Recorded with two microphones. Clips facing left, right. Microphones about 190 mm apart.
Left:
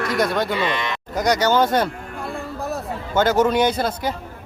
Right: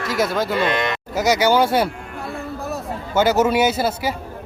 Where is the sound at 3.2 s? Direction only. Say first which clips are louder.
Right 1 dB; 10° right (ahead or behind).